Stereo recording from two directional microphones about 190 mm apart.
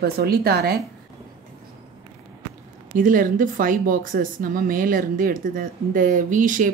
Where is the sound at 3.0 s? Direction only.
45° right (ahead or behind).